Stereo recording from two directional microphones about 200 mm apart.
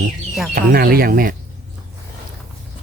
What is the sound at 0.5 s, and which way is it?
Speech, 50° right (ahead or behind).